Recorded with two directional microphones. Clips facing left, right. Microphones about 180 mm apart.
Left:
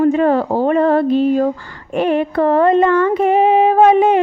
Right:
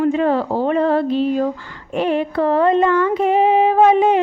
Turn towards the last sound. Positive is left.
turn(degrees=55)  # may be behind; listen again after turning